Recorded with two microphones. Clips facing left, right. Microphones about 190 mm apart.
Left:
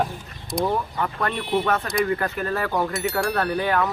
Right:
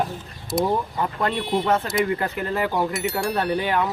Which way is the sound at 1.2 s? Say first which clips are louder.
Right 1 dB; 20° right (ahead or behind).